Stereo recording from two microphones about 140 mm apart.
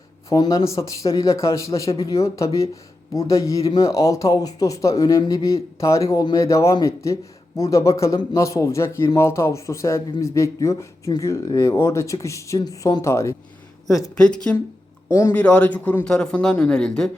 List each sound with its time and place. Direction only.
0.3 s speech: 25° left (ahead or behind)
14.2 s speech: 5° left (ahead or behind)
15.1 s speech: 15° left (ahead or behind)